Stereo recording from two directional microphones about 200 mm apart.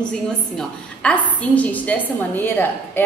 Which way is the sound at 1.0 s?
5° left (ahead or behind).